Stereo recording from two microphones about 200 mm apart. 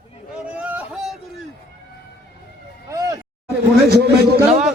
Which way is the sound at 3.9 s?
55° right (ahead or behind).